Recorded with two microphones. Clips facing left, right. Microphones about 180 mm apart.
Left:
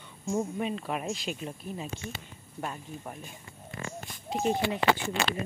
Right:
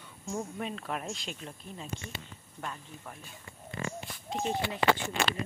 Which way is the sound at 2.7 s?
20° left (ahead or behind).